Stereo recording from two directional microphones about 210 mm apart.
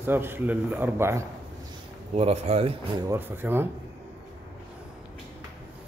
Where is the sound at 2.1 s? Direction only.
30° right (ahead or behind).